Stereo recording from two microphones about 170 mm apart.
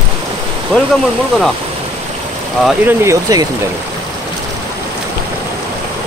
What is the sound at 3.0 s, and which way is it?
Speech, 20° right (ahead or behind).